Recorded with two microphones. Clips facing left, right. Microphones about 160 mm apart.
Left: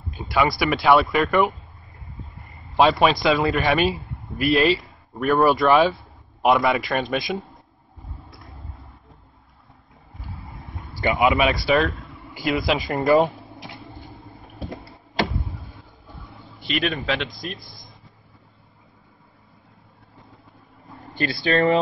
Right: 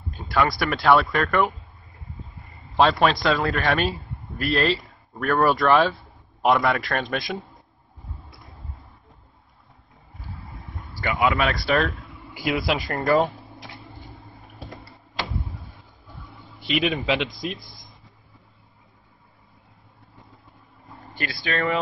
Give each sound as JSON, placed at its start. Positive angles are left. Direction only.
{"t": 0.1, "sound": "a man's voice", "side_deg": 5}
{"t": 11.0, "sound": "speech", "side_deg": 20}
{"t": 11.5, "sound": "speech", "side_deg": 0}
{"t": 13.0, "sound": "speech", "side_deg": 15}
{"t": 13.5, "sound": "a sound", "side_deg": 20}
{"t": 16.6, "sound": "speech", "side_deg": -5}
{"t": 21.1, "sound": "speech", "side_deg": 30}